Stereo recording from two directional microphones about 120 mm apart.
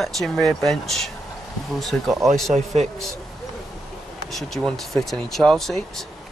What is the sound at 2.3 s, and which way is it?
Speech, centre (ahead or behind).